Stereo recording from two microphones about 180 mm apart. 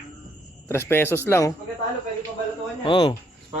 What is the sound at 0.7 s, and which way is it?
Speech, 15° left (ahead or behind).